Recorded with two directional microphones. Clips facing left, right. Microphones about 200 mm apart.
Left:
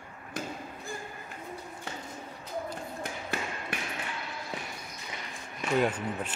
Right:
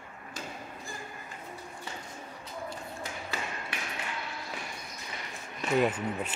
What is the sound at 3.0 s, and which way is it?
Tap, 55° left (ahead or behind).